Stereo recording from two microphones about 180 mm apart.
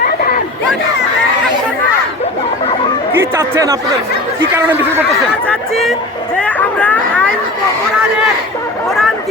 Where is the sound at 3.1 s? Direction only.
15° right (ahead or behind).